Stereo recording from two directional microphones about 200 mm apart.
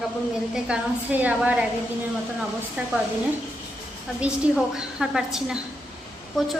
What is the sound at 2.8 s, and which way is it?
Speech, 10° right (ahead or behind).